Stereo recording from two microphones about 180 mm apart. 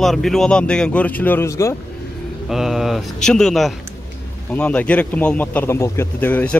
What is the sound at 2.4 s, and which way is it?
A man's voice, centre (ahead or behind).